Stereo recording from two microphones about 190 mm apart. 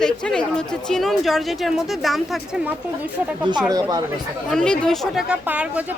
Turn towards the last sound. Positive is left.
turn(degrees=-5)  # may be behind; listen again after turning